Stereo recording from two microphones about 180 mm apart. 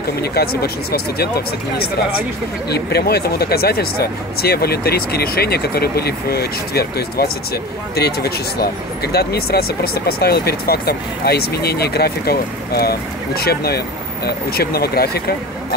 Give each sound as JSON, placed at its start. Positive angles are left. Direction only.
{"t": 0.2, "sound": "speech", "side_deg": 60}
{"t": 2.7, "sound": "speech", "side_deg": 60}